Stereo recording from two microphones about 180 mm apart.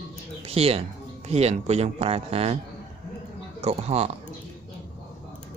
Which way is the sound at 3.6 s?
35° right (ahead or behind).